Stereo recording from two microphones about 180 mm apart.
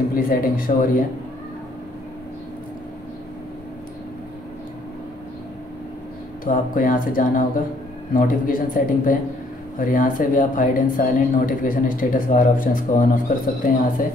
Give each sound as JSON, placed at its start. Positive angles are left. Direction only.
{"t": 0.1, "sound": "speech", "side_deg": 55}
{"t": 6.4, "sound": "speech", "side_deg": 50}